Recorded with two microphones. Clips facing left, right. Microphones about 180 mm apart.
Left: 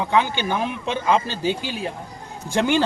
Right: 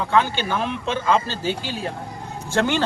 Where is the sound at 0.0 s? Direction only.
15° left (ahead or behind).